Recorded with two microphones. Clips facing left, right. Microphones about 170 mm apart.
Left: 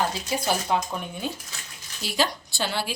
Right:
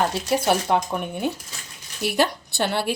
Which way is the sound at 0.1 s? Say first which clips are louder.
Right 6 dB; 65° right (ahead or behind).